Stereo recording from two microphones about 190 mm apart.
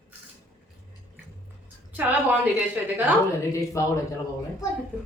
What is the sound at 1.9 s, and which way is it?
A woman's voice, 10° right (ahead or behind).